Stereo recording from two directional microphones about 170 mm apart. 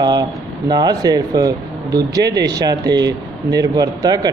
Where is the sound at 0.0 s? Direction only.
25° right (ahead or behind).